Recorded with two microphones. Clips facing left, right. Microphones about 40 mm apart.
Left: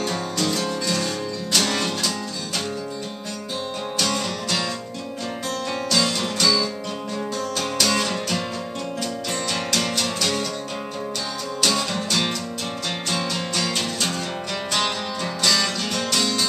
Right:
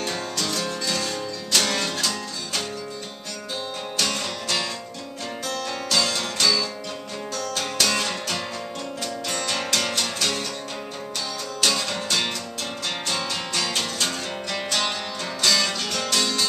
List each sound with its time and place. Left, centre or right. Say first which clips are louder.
0.4 s music: left 5 dB; centre
0.8 s music: left 2 dB; centre
4.0 s music: left 2 dB; centre
5.9 s music: left 1 dB; centre
11.6 s music: left 1 dB; centre
15.4 s music: even; centre